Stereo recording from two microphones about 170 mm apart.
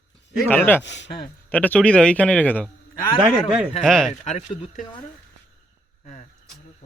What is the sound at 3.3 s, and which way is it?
Speech, 5° right (ahead or behind).